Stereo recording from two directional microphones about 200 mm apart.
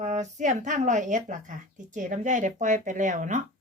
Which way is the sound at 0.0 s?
35° right (ahead or behind).